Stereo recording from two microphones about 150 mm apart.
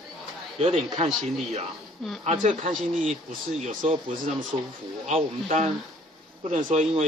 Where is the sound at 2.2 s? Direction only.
50° right (ahead or behind).